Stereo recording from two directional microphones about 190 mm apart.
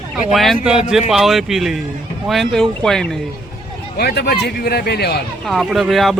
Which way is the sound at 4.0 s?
55° left (ahead or behind).